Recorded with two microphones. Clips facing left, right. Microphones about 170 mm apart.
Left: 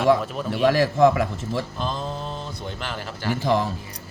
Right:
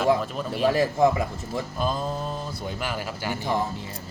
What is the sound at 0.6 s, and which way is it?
Speech, 80° left.